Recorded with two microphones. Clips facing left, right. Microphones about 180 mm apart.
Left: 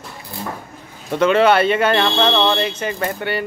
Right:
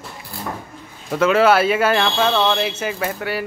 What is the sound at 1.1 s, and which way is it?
Speech, 5° right (ahead or behind).